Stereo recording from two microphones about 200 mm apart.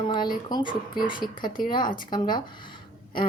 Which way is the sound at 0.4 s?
25° left (ahead or behind).